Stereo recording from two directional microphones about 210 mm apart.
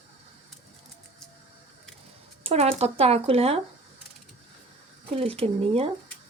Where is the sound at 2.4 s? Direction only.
30° right (ahead or behind).